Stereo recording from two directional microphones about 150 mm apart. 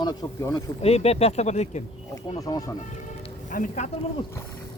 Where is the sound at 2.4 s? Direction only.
25° left (ahead or behind).